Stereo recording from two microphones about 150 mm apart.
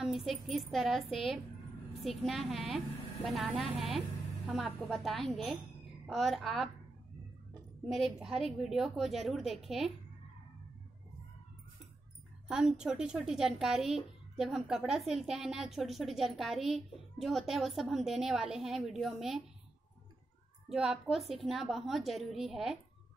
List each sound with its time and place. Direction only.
0.0 s a woman's voice: centre (ahead or behind)
7.8 s a woman's voice: centre (ahead or behind)
12.4 s a woman's voice: 5° right (ahead or behind)
20.6 s a woman's voice: 5° right (ahead or behind)